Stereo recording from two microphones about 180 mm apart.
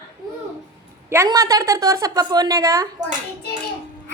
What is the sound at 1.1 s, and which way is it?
A woman's voice, 15° right (ahead or behind).